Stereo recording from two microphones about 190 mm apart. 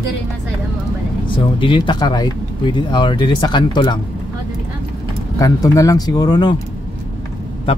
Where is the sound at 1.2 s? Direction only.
25° left (ahead or behind).